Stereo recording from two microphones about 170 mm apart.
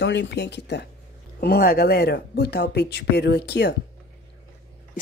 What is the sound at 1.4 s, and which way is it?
Speech, 65° left (ahead or behind).